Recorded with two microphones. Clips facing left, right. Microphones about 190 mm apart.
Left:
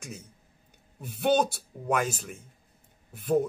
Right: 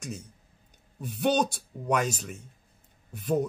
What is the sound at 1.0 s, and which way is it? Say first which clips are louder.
Speech: left 1 dB; centre (ahead or behind).